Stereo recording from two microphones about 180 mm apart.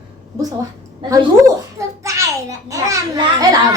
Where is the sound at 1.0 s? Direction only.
25° right (ahead or behind).